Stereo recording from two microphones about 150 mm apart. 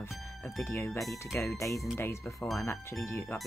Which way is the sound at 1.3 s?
20° left (ahead or behind).